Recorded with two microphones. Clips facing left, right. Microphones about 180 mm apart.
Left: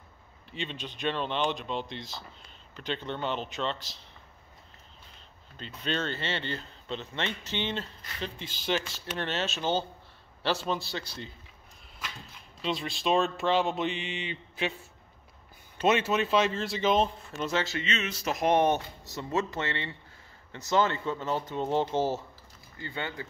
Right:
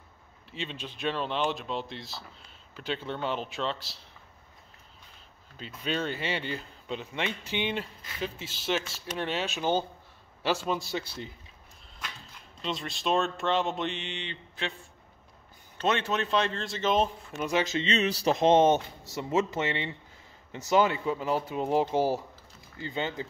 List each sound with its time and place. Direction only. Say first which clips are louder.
0.5 s speech: even; centre (ahead or behind)
5.6 s speech: right 1 dB; 5° right (ahead or behind)
12.6 s speech: left 2 dB; centre (ahead or behind)
15.8 s speech: left 3 dB; 5° left (ahead or behind); by 17.8 s 15° right (ahead or behind)
17.8 s speech: right 6 dB; 35° right (ahead or behind)